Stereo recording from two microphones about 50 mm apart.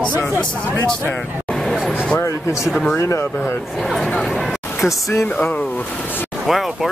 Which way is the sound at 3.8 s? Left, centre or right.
Centre.